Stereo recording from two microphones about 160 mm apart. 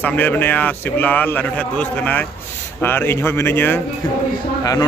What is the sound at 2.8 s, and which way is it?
A man's voice, 15° left (ahead or behind).